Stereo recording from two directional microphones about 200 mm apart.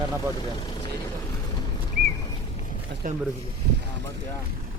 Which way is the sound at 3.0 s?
45° right (ahead or behind).